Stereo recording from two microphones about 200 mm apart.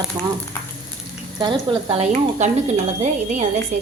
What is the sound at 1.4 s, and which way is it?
A woman's voice, 25° right (ahead or behind).